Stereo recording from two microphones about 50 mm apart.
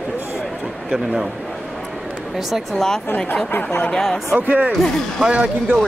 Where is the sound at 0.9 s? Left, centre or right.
Centre.